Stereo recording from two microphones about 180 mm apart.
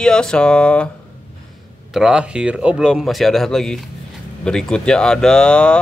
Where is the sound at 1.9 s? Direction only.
5° right (ahead or behind).